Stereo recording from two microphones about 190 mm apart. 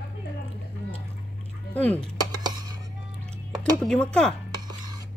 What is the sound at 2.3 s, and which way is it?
Music, 20° right (ahead or behind).